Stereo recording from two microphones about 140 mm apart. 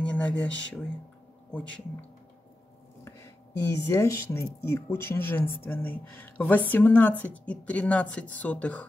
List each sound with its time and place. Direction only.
0.0 s speech: 10° left (ahead or behind)
3.0 s a woman's voice: 20° left (ahead or behind)